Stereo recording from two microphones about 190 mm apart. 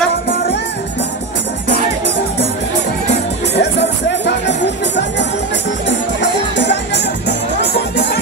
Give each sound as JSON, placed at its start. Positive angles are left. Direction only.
{"t": 3.5, "sound": "music", "side_deg": 65}